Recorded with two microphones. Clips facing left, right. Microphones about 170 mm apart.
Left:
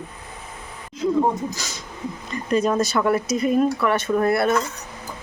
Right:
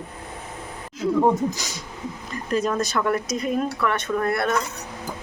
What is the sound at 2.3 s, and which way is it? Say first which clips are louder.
Speech: left 3 dB; centre (ahead or behind).